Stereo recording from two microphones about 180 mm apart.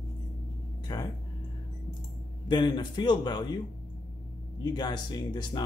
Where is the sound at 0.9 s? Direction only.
20° left (ahead or behind).